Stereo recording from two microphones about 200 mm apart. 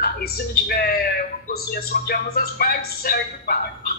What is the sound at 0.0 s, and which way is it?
A man's voice, 55° left (ahead or behind).